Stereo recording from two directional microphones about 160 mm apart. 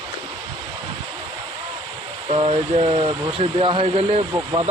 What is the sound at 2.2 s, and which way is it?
Speech, 35° right (ahead or behind).